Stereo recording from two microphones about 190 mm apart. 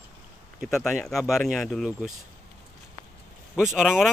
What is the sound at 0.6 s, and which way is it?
Speech, centre (ahead or behind).